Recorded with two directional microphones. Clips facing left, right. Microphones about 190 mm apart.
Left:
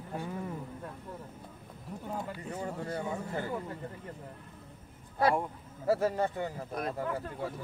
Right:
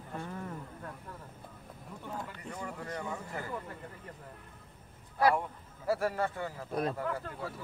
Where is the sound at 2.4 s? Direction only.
25° left (ahead or behind).